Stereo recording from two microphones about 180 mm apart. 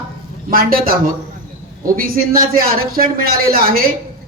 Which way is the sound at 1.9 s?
55° right (ahead or behind).